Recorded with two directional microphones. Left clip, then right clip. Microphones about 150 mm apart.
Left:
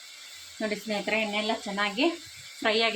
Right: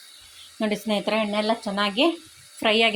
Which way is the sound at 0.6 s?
50° right (ahead or behind).